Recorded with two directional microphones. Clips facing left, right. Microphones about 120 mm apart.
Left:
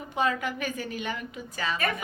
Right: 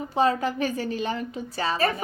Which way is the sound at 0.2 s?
35° right (ahead or behind).